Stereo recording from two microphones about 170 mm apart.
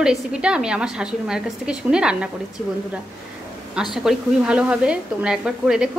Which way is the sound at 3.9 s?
5° right (ahead or behind).